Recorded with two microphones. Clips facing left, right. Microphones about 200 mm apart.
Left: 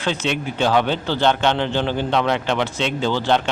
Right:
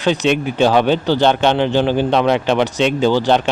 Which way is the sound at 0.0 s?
15° right (ahead or behind).